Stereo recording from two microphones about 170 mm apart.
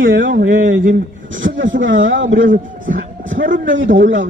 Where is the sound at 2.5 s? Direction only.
55° right (ahead or behind).